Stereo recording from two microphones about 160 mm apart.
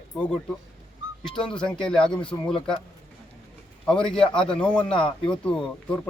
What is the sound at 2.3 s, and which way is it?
Speech, 20° left (ahead or behind).